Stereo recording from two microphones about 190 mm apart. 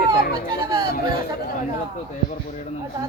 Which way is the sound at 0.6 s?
20° right (ahead or behind).